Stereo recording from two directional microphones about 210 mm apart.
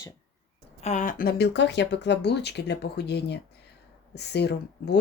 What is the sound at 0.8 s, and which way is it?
Speech, 35° left (ahead or behind).